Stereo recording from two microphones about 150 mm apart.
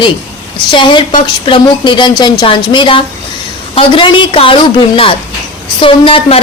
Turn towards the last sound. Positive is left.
turn(degrees=40)  # may be behind; listen again after turning